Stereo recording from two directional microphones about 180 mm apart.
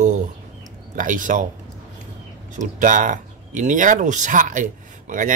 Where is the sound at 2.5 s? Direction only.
45° right (ahead or behind).